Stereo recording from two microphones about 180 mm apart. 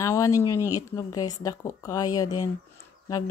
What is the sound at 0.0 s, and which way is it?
Speech, 15° left (ahead or behind).